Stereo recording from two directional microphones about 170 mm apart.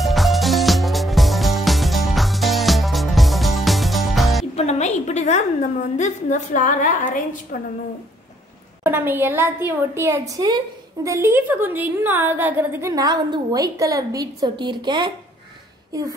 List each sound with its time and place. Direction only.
0.0 s music: centre (ahead or behind)
4.6 s music: 40° left (ahead or behind)
5.0 s a woman's voice: 40° left (ahead or behind)
8.8 s a woman's voice: 10° right (ahead or behind)